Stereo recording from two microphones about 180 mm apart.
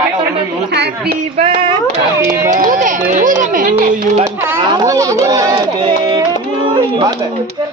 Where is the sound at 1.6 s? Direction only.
30° right (ahead or behind).